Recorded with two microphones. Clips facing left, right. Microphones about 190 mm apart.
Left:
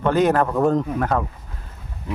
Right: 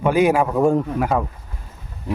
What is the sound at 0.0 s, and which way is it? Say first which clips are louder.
A man's voice: right 1 dB; 10° right (ahead or behind).